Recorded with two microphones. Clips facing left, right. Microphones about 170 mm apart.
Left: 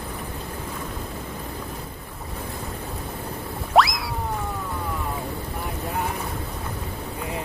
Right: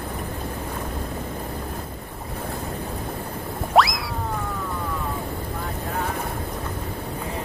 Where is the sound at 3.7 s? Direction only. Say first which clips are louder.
Even; centre (ahead or behind).